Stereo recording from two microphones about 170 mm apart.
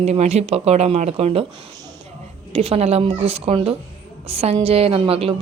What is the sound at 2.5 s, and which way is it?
A woman's voice, 35° right (ahead or behind).